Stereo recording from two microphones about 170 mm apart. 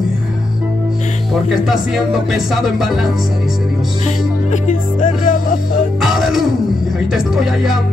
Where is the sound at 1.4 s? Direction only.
Centre (ahead or behind).